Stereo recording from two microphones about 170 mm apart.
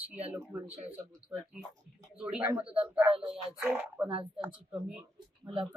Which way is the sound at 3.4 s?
10° right (ahead or behind).